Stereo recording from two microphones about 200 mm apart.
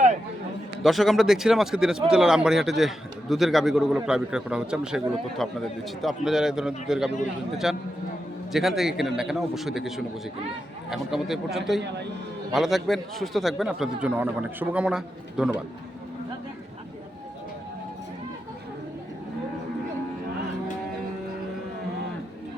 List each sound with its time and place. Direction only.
0.8 s speech: centre (ahead or behind)